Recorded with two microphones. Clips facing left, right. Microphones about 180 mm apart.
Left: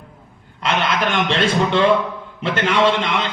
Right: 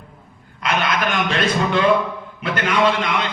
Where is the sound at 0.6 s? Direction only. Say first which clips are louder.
Left 1 dB; 25° left (ahead or behind).